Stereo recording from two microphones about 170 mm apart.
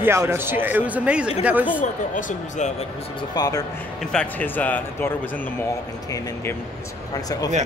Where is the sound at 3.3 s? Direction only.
25° left (ahead or behind).